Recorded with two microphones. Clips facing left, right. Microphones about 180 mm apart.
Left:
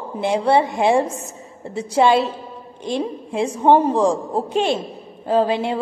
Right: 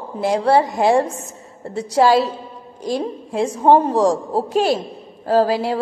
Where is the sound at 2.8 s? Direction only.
Centre (ahead or behind).